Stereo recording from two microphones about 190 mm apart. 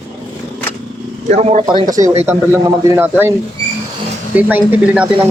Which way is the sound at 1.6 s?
20° right (ahead or behind).